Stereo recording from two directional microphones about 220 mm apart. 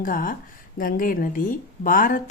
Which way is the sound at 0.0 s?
40° left (ahead or behind).